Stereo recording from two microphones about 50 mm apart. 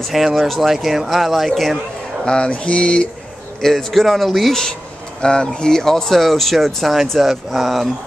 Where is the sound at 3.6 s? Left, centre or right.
Centre.